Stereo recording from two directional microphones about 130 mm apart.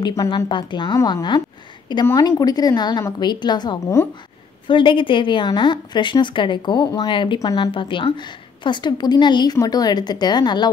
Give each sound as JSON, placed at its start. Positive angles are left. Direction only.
{"t": 0.0, "sound": "a woman's voice", "side_deg": 30}
{"t": 0.9, "sound": "a woman's voice", "side_deg": 25}
{"t": 3.8, "sound": "speech", "side_deg": 20}
{"t": 4.6, "sound": "a woman's voice", "side_deg": 40}